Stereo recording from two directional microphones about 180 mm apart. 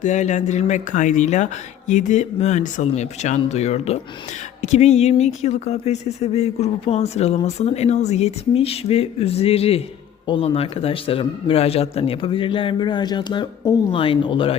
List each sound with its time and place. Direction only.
0.0 s speech: 40° left (ahead or behind)